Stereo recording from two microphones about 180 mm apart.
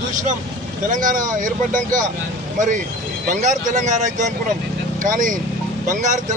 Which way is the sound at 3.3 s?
45° right (ahead or behind).